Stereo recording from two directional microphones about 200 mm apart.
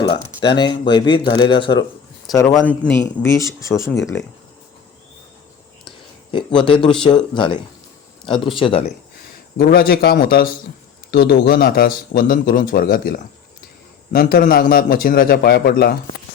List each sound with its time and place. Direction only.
0.0 s speech: 25° left (ahead or behind)
6.3 s speech: 25° left (ahead or behind)
9.6 s a man's voice: 50° left (ahead or behind)